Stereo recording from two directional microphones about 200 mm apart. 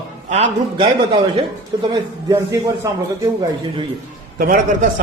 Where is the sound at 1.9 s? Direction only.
15° right (ahead or behind).